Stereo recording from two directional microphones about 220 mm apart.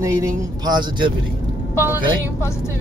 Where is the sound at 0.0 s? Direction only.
15° right (ahead or behind).